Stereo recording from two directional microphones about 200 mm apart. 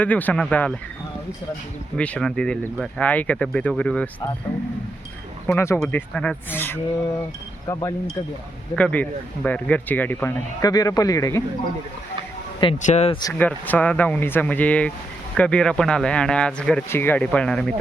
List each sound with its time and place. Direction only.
0.0 s speech: 10° left (ahead or behind)
2.0 s speech: 5° left (ahead or behind)
5.5 s speech: 10° left (ahead or behind)
12.8 s speech: 35° left (ahead or behind)
13.2 s speech: 10° left (ahead or behind)